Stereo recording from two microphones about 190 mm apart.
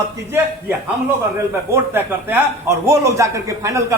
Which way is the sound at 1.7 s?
10° right (ahead or behind).